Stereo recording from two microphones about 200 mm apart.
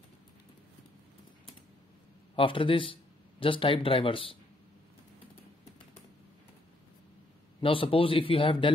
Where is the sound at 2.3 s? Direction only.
25° left (ahead or behind).